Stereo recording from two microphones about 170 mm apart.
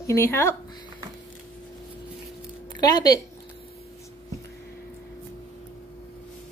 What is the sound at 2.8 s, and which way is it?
Speech, 20° left (ahead or behind).